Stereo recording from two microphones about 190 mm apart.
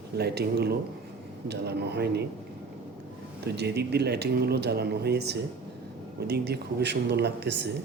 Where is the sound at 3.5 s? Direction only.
60° right (ahead or behind).